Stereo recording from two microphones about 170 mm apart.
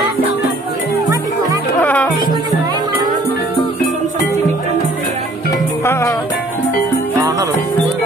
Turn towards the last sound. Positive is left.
turn(degrees=-20)  # may be behind; listen again after turning